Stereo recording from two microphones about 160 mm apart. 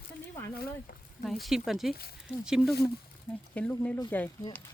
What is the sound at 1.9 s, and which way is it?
Speech, 75° left (ahead or behind).